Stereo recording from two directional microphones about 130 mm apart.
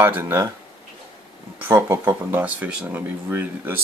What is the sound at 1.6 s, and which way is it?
Speech, 15° right (ahead or behind).